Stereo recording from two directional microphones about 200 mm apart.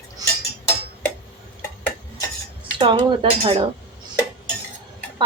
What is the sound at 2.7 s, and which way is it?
Speech, 25° right (ahead or behind).